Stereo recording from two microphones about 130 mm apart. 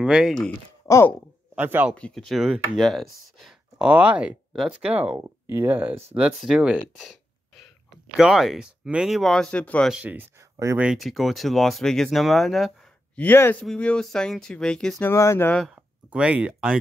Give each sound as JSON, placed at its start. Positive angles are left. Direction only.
{"t": 0.0, "sound": "speech", "side_deg": -5}
{"t": 0.8, "sound": "a sound", "side_deg": 25}
{"t": 1.5, "sound": "speech", "side_deg": -15}
{"t": 2.0, "sound": "speech", "side_deg": 5}
{"t": 7.0, "sound": "a sound", "side_deg": 0}
{"t": 8.2, "sound": "speech", "side_deg": -5}
{"t": 9.9, "sound": "speech", "side_deg": -15}
{"t": 10.8, "sound": "speech", "side_deg": -5}
{"t": 15.0, "sound": "speech", "side_deg": 20}
{"t": 15.5, "sound": "speech", "side_deg": 0}
{"t": 16.1, "sound": "speech", "side_deg": -10}